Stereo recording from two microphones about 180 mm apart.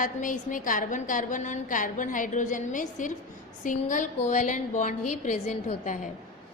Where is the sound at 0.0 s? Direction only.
45° left (ahead or behind).